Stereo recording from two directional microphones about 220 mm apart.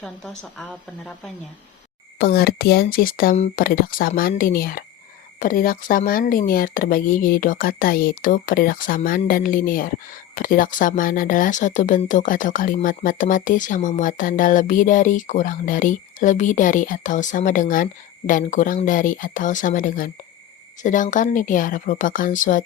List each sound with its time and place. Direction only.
0.0 s speech: centre (ahead or behind)
2.1 s speech: 45° left (ahead or behind)